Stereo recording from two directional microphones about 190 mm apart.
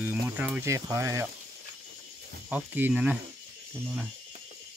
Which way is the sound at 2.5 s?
10° right (ahead or behind).